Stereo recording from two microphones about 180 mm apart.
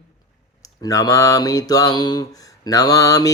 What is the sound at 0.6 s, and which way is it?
Mantra, 20° left (ahead or behind).